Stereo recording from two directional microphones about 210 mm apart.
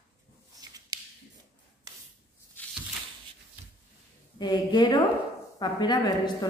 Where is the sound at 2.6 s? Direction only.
10° left (ahead or behind).